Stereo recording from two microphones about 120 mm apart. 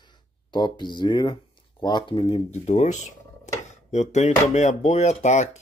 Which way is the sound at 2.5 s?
70° left (ahead or behind).